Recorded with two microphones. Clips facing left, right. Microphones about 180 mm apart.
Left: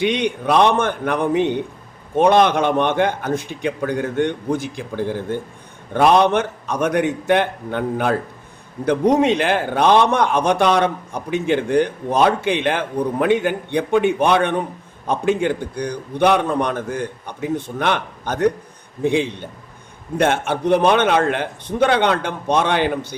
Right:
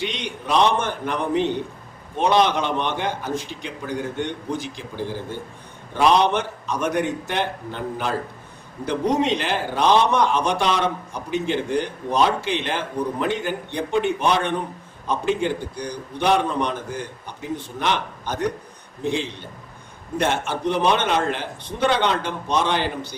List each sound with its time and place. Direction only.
0.0 s a man's voice: 60° left (ahead or behind)